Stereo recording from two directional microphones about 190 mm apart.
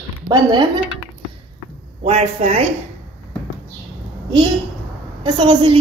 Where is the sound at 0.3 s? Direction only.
20° right (ahead or behind).